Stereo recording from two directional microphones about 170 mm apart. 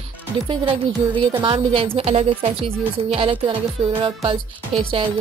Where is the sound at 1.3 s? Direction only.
30° right (ahead or behind).